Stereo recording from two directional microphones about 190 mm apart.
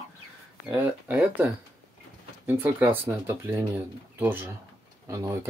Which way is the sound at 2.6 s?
10° right (ahead or behind).